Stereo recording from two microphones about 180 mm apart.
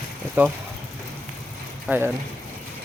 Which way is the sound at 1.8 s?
10° right (ahead or behind).